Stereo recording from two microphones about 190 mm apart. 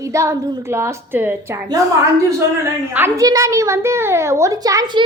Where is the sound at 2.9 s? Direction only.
15° right (ahead or behind).